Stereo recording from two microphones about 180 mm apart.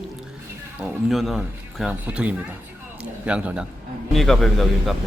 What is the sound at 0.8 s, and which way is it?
A man's voice, centre (ahead or behind).